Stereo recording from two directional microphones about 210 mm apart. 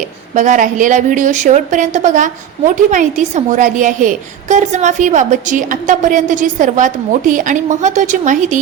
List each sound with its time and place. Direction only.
0.3 s a woman's voice: 35° right (ahead or behind)